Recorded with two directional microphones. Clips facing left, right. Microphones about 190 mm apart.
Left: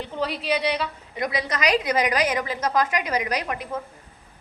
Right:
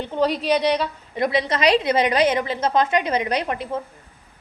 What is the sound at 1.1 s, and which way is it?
A woman's voice, 25° right (ahead or behind).